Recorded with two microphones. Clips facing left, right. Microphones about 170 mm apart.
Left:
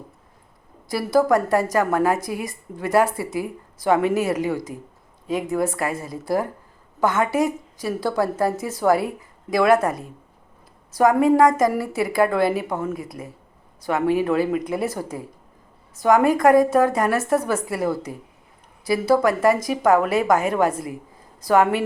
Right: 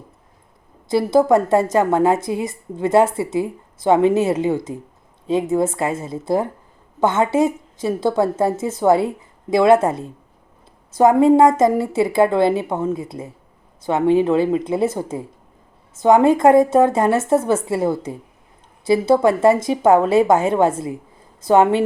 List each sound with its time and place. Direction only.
0.9 s a woman's voice: 25° right (ahead or behind)